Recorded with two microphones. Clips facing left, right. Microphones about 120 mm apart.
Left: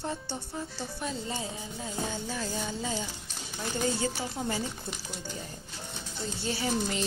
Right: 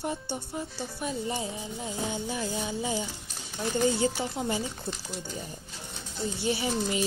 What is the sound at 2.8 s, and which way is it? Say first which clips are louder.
Speech: right 3 dB; 15° right (ahead or behind).